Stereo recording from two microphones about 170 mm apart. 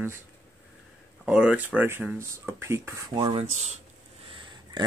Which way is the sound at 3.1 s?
30° right (ahead or behind).